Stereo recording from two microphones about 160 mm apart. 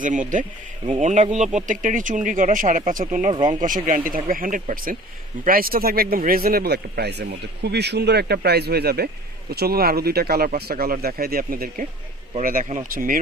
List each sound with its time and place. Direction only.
0.0 s speech: 50° right (ahead or behind)
3.3 s speech: 30° right (ahead or behind)
3.8 s speech: 60° right (ahead or behind)